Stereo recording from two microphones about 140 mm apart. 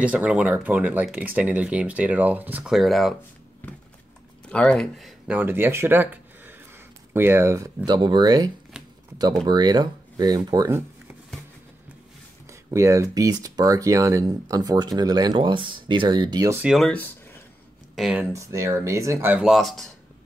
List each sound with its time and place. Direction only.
0.0 s speech: 10° right (ahead or behind)
2.7 s speech: centre (ahead or behind)
3.6 s a sound: 10° left (ahead or behind)
4.5 s speech: 5° left (ahead or behind)
5.3 s speech: 15° right (ahead or behind)
9.5 s speech: 30° right (ahead or behind)
12.4 s speech: 20° right (ahead or behind)
16.6 s speech: centre (ahead or behind)
16.9 s a sound: 15° left (ahead or behind)
17.9 s speech: 5° right (ahead or behind)
18.3 s speech: 20° right (ahead or behind)
19.3 s speech: centre (ahead or behind)